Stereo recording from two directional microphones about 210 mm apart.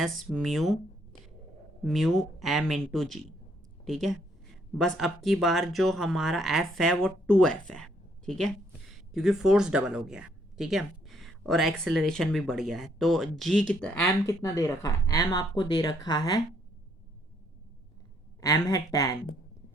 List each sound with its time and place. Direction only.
0.0 s speech: centre (ahead or behind)
1.8 s speech: centre (ahead or behind); by 16.4 s 20° left (ahead or behind)
18.3 s speech: 15° left (ahead or behind)